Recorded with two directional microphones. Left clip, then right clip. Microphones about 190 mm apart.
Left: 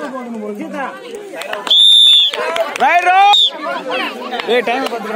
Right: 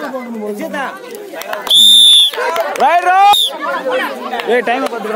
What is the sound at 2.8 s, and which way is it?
Speech, 65° right (ahead or behind).